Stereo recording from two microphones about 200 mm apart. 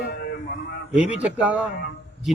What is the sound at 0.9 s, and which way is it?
Speech, 5° right (ahead or behind).